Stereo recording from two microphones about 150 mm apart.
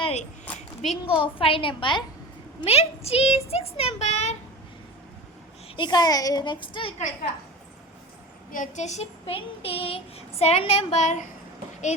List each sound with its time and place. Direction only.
0.0 s a sound: 45° left (ahead or behind)
0.8 s a woman's voice: 40° left (ahead or behind)
2.6 s child singing: 45° left (ahead or behind)
5.6 s a woman's voice: 35° left (ahead or behind)
8.5 s child singing: 55° left (ahead or behind)